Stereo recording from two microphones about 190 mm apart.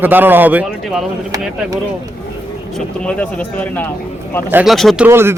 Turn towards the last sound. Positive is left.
turn(degrees=-15)  # may be behind; listen again after turning